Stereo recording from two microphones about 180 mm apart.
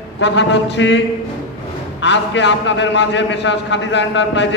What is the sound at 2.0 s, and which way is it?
A man's voice, 75° left (ahead or behind).